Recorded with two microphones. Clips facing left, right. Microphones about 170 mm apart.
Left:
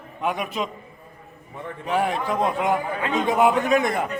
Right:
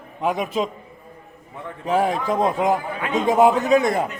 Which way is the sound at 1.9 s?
40° right (ahead or behind).